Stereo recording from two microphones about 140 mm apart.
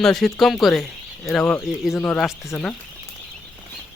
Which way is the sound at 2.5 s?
10° left (ahead or behind).